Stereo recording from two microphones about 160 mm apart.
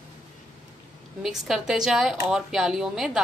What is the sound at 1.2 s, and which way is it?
Speech, centre (ahead or behind).